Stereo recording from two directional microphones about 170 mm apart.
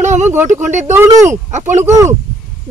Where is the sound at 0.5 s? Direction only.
45° right (ahead or behind).